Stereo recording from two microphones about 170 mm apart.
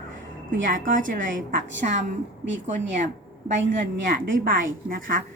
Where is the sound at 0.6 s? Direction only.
50° right (ahead or behind).